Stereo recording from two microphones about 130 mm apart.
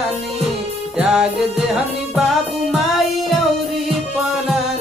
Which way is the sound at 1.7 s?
Centre (ahead or behind).